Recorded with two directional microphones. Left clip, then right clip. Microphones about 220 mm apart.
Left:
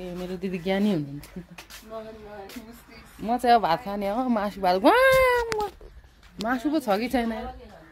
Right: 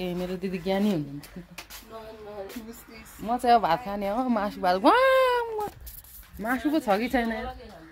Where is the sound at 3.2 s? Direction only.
10° left (ahead or behind).